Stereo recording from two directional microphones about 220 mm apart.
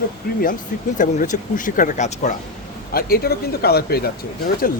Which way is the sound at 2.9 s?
45° left (ahead or behind).